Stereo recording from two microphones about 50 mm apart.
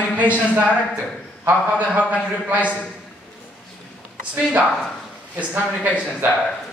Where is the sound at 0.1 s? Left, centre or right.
Right.